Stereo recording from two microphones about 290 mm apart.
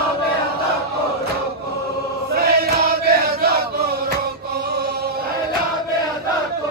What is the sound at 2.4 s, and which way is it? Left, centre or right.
Chant, right.